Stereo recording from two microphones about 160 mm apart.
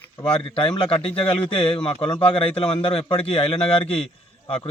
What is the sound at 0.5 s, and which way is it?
A man's voice, 35° left (ahead or behind).